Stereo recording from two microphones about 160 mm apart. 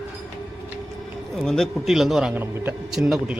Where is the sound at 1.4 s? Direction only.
5° left (ahead or behind).